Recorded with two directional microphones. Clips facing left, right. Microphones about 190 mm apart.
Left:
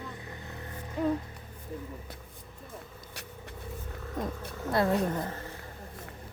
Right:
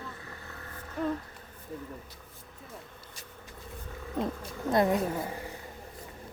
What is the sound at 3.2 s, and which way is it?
Vehicle, 70° left (ahead or behind).